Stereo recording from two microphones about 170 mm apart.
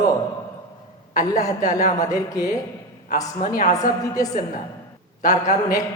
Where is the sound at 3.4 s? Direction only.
55° left (ahead or behind).